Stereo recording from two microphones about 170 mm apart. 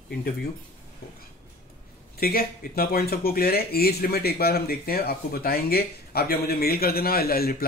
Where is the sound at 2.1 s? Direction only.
60° left (ahead or behind).